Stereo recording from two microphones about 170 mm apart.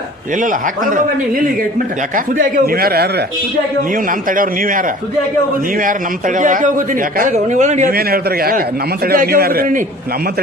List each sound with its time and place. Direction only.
0.3 s a man's voice: 50° right (ahead or behind); by 3.2 s 65° right (ahead or behind)
3.9 s a man's voice: 55° right (ahead or behind)
7.9 s speech: 60° right (ahead or behind)